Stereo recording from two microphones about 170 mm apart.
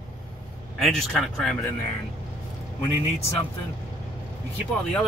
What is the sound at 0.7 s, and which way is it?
Speech, centre (ahead or behind).